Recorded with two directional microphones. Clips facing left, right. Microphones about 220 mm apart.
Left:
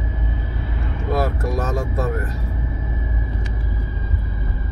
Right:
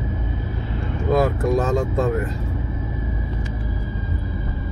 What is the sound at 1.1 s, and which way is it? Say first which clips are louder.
Vehicle: right 4 dB; 20° right (ahead or behind).